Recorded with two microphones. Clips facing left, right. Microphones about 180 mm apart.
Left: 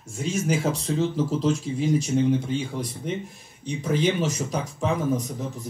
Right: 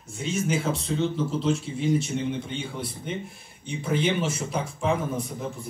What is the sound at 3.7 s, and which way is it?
Speech, 40° left (ahead or behind).